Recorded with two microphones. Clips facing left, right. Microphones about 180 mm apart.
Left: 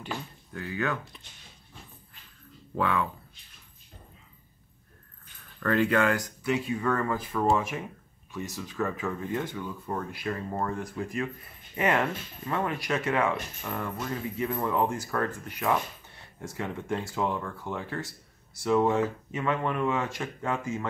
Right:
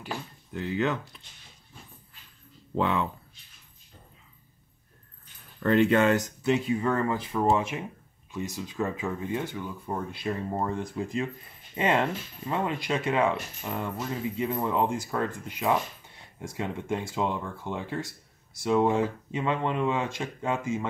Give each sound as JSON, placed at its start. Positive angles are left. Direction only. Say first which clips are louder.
{"t": 0.5, "sound": "speech", "louder": "right 4 dB", "side_deg": -20}
{"t": 1.1, "sound": "speech", "louder": "left 2 dB", "side_deg": 0}
{"t": 2.7, "sound": "speech", "louder": "right 1 dB", "side_deg": -25}
{"t": 5.6, "sound": "speech", "louder": "right 3 dB", "side_deg": -20}